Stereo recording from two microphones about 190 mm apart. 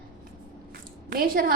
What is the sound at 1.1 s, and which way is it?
Speech, 50° right (ahead or behind).